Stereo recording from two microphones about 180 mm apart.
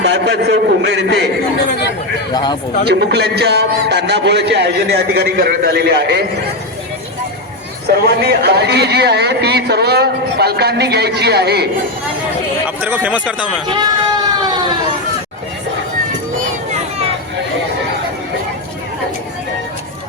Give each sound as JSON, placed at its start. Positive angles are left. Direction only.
{"t": 0.0, "sound": "a man's voice", "side_deg": -70}
{"t": 2.3, "sound": "speech", "side_deg": 25}
{"t": 2.8, "sound": "a man's voice", "side_deg": -65}
{"t": 7.9, "sound": "a man's voice", "side_deg": -65}
{"t": 12.8, "sound": "speech", "side_deg": -10}
{"t": 13.7, "sound": "a sound", "side_deg": -25}